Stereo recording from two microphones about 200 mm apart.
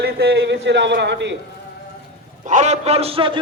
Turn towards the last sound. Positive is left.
turn(degrees=-25)  # may be behind; listen again after turning